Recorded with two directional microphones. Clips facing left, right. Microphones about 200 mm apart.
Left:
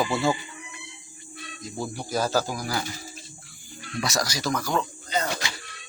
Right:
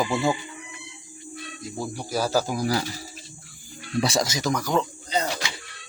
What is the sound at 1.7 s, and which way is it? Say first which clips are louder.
Speech: even; 10° right (ahead or behind).